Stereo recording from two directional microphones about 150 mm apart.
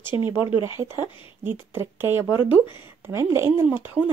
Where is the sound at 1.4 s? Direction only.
15° right (ahead or behind).